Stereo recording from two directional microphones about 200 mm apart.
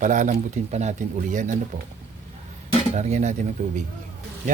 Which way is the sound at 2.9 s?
35° right (ahead or behind).